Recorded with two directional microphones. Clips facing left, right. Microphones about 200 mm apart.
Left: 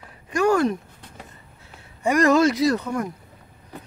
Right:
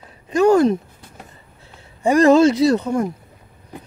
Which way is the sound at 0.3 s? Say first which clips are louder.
Right 6 dB; 25° right (ahead or behind).